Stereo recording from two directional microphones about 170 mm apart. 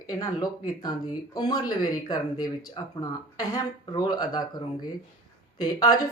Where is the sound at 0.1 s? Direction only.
20° left (ahead or behind).